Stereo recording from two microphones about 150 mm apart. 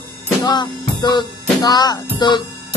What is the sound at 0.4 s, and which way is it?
Music, 30° left (ahead or behind).